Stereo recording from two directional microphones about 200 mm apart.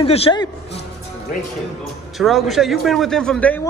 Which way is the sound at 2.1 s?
Centre (ahead or behind).